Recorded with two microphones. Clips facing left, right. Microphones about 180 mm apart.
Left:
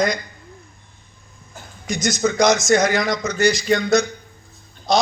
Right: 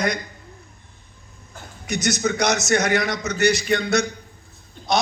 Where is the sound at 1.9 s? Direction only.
65° right (ahead or behind).